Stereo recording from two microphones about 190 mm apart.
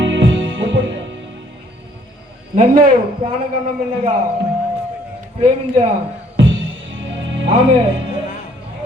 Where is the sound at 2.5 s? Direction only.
45° right (ahead or behind).